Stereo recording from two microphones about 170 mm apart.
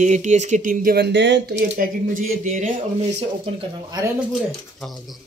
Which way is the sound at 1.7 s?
55° right (ahead or behind).